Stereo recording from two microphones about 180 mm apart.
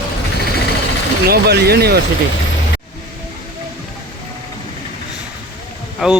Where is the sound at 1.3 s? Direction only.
65° right (ahead or behind).